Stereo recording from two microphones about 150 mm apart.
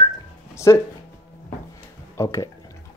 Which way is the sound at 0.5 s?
20° left (ahead or behind).